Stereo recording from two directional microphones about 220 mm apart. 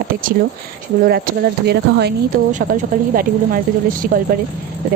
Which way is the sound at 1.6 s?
50° right (ahead or behind).